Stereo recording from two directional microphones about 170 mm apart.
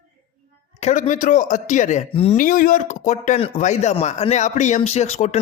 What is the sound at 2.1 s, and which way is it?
Speech, 35° left (ahead or behind).